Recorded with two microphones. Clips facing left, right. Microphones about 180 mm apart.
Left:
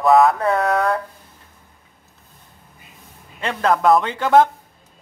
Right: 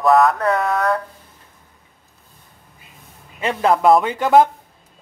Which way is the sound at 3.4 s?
15° right (ahead or behind).